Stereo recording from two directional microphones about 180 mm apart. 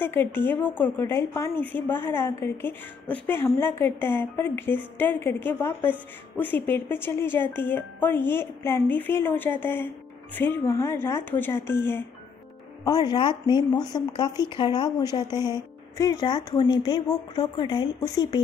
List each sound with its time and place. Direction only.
0.0 s a woman's voice: 10° left (ahead or behind)
12.8 s speech: 25° left (ahead or behind)